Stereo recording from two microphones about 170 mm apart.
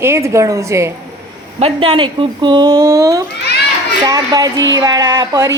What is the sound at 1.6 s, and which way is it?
Speech, 30° right (ahead or behind).